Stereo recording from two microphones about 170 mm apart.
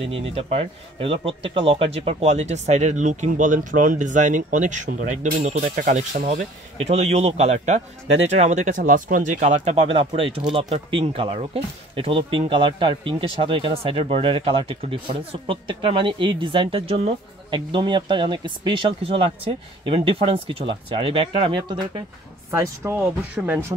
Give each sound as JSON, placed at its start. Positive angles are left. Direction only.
{"t": 0.0, "sound": "speech", "side_deg": -35}
{"t": 22.5, "sound": "speech", "side_deg": -15}